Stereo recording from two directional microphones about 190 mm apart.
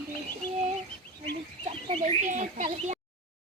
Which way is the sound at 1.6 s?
30° right (ahead or behind).